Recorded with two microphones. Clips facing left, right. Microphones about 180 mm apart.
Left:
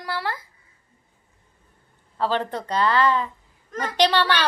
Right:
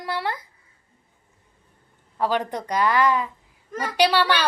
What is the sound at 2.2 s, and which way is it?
A woman's voice, 15° right (ahead or behind).